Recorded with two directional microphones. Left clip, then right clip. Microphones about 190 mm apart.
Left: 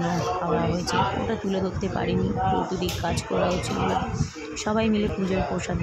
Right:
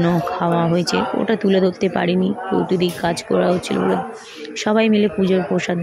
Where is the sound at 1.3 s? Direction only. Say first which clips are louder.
Right 10 dB; 20° right (ahead or behind).